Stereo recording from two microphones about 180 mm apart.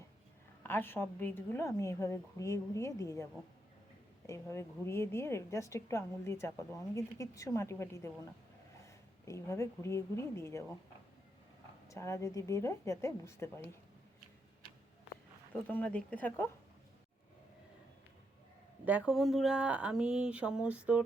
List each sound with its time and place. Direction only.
0.6 s a woman's voice: 10° left (ahead or behind)
4.3 s a woman's voice: 15° left (ahead or behind)
11.9 s a woman's voice: 15° left (ahead or behind)
15.6 s a woman's voice: 10° left (ahead or behind)
18.9 s speech: 5° right (ahead or behind)